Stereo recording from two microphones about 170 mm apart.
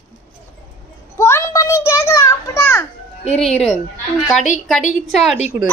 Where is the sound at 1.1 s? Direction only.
15° left (ahead or behind).